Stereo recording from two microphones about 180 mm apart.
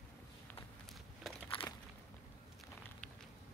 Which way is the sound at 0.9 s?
Centre (ahead or behind).